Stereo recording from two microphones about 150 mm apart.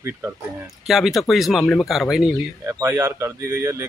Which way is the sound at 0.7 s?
Centre (ahead or behind).